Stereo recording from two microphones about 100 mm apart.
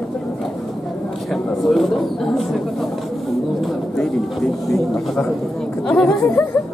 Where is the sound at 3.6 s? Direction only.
Centre (ahead or behind).